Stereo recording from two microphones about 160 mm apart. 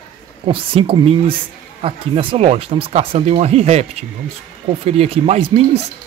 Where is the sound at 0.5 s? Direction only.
35° right (ahead or behind).